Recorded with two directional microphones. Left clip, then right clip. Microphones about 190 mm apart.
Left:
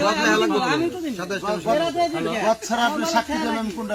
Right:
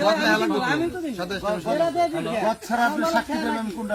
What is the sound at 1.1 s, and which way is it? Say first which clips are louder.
Speech: left 1 dB; 50° right (ahead or behind).